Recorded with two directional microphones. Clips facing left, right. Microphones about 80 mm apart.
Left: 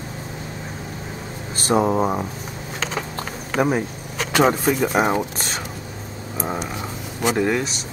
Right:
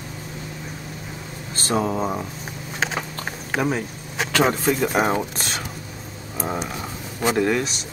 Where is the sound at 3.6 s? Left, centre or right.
Centre.